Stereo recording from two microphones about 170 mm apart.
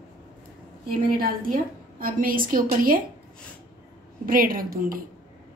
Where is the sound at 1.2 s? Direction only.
55° right (ahead or behind).